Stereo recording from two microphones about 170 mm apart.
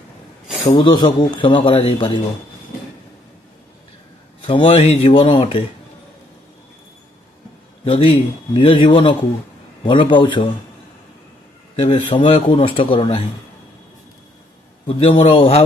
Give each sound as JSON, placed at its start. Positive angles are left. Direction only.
{"t": 0.7, "sound": "speech", "side_deg": 30}
{"t": 4.5, "sound": "speech", "side_deg": 35}
{"t": 7.8, "sound": "speech", "side_deg": 30}
{"t": 11.7, "sound": "speech", "side_deg": 35}
{"t": 14.9, "sound": "speech", "side_deg": 30}